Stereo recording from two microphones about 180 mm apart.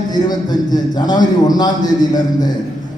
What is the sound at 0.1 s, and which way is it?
A man's voice, 20° left (ahead or behind).